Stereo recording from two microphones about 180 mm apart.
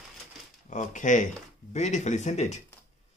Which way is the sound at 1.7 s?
40° left (ahead or behind).